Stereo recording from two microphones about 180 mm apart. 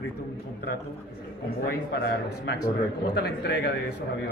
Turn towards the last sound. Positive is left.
turn(degrees=70)  # may be behind; listen again after turning